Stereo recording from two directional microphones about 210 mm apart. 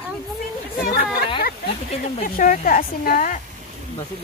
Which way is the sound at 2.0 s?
40° left (ahead or behind).